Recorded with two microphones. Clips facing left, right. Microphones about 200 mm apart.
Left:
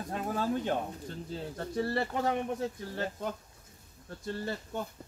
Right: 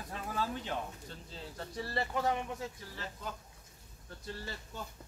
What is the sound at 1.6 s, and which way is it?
Speech, 55° left (ahead or behind).